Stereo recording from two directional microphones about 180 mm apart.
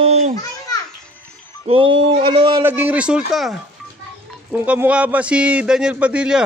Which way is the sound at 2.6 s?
10° right (ahead or behind).